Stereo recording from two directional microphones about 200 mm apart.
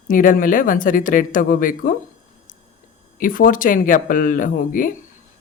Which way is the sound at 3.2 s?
45° left (ahead or behind).